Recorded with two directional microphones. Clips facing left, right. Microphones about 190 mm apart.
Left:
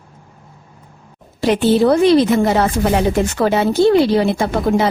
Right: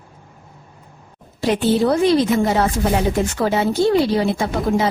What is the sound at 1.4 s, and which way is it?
A woman's voice, 75° left (ahead or behind).